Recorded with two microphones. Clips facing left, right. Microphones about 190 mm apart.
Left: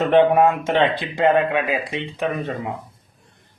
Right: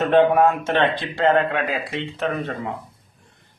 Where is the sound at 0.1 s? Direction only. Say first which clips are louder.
Left 1 dB; 20° left (ahead or behind).